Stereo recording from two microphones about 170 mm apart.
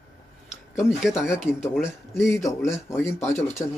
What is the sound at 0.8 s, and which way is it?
Speech, 5° right (ahead or behind).